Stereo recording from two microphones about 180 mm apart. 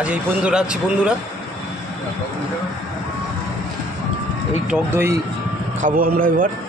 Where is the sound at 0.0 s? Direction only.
5° right (ahead or behind).